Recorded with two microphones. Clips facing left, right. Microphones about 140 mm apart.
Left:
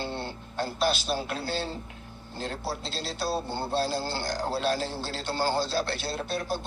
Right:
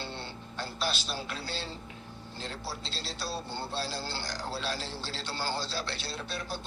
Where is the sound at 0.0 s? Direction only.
50° left (ahead or behind).